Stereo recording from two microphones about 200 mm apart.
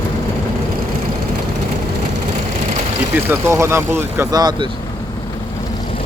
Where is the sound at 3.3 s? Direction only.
15° right (ahead or behind).